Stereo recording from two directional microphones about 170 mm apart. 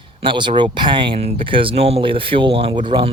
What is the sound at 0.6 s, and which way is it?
Speech, 30° right (ahead or behind).